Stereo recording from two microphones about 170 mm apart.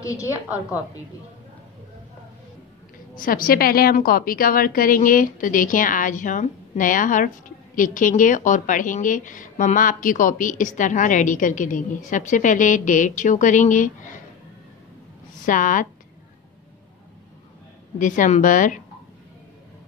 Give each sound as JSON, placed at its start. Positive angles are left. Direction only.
{"t": 0.0, "sound": "a woman's voice", "side_deg": 20}
{"t": 3.2, "sound": "a woman's voice", "side_deg": 55}
{"t": 15.4, "sound": "a woman's voice", "side_deg": 50}
{"t": 17.9, "sound": "a woman's voice", "side_deg": 50}